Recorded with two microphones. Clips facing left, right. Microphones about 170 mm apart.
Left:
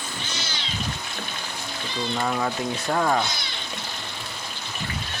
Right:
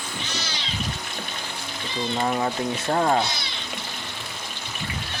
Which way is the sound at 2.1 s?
25° right (ahead or behind).